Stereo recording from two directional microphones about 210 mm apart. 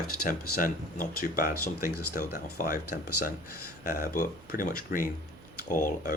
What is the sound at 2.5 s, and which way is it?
Speech, 40° left (ahead or behind).